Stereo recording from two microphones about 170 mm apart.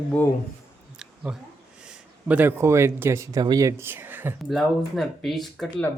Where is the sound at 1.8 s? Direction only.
5° right (ahead or behind).